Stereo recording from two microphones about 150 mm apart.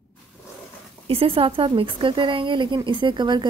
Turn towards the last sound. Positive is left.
turn(degrees=-30)  # may be behind; listen again after turning